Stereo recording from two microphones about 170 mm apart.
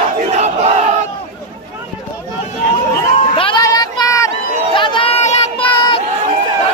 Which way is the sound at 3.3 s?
30° left (ahead or behind).